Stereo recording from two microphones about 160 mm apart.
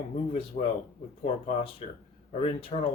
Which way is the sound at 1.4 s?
40° left (ahead or behind).